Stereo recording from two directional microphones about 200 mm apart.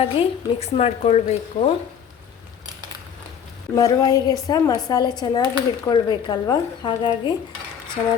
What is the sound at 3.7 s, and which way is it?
A woman's voice, 15° left (ahead or behind).